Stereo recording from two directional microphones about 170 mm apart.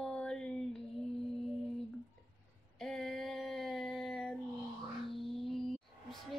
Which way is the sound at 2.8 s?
Centre (ahead or behind).